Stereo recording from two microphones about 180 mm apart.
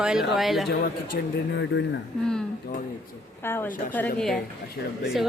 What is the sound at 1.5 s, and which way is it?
Speech, 90° left.